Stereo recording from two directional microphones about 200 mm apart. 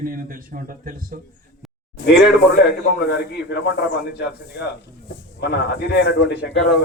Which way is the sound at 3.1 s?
60° left (ahead or behind).